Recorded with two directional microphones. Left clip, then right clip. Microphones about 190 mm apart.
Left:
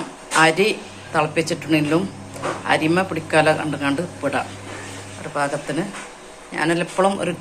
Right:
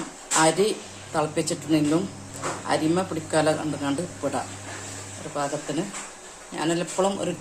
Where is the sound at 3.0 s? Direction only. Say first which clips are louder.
Left 6 dB; 15° right (ahead or behind).